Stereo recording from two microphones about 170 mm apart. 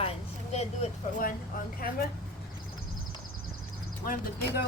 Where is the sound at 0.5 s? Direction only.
40° left (ahead or behind).